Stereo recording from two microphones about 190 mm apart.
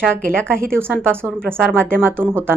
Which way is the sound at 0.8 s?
10° right (ahead or behind).